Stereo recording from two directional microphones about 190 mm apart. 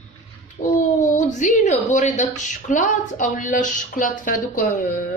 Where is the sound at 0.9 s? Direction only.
40° left (ahead or behind).